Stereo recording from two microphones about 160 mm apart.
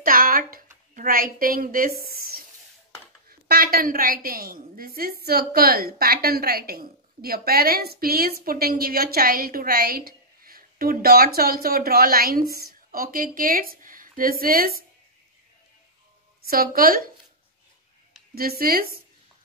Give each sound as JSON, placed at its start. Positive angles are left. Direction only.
{"t": 0.0, "sound": "a woman's voice", "side_deg": -65}
{"t": 16.4, "sound": "a woman's voice", "side_deg": -65}
{"t": 18.3, "sound": "a woman's voice", "side_deg": -70}